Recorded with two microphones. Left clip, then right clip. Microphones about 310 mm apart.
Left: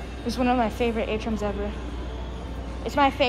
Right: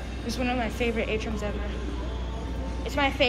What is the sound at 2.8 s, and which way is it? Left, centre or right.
Speech, centre.